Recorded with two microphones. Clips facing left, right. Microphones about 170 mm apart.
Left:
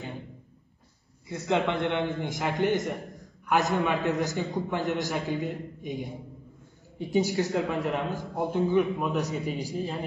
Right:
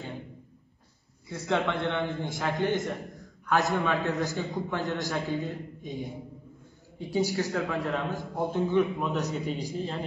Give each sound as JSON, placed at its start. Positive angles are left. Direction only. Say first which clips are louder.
{"t": 1.5, "sound": "a man's voice", "louder": "left 2 dB", "side_deg": 15}
{"t": 7.0, "sound": "a man's voice", "louder": "left 2 dB", "side_deg": 20}